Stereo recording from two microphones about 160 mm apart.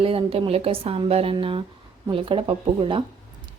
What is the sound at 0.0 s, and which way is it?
Speech, 35° right (ahead or behind).